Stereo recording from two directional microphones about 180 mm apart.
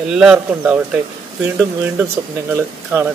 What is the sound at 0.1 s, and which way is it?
Speech, 5° right (ahead or behind).